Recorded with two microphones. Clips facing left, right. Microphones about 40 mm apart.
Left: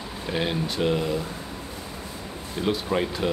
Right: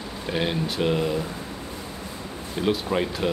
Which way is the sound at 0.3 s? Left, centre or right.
Centre.